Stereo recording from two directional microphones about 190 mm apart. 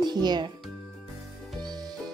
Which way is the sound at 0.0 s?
20° right (ahead or behind).